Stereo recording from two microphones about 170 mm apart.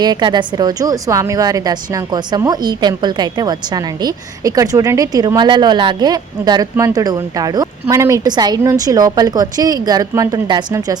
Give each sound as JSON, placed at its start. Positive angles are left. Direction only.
{"t": 0.0, "sound": "a woman's voice", "side_deg": -25}